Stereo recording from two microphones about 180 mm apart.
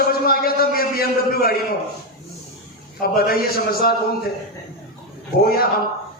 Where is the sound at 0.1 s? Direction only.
55° left (ahead or behind).